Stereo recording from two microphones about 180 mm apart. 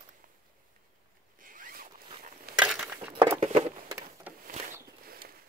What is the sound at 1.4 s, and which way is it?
Zipper, 50° right (ahead or behind).